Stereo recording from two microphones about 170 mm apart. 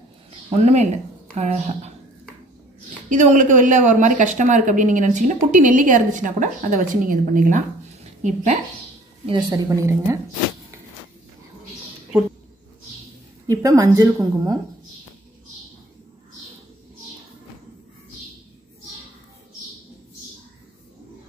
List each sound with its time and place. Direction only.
0.7 s a woman's voice: 40° right (ahead or behind)
3.1 s speech: 45° right (ahead or behind)
9.2 s a woman's voice: 30° right (ahead or behind)
9.8 s a woman's voice: 20° right (ahead or behind)
13.5 s a woman's voice: 20° right (ahead or behind)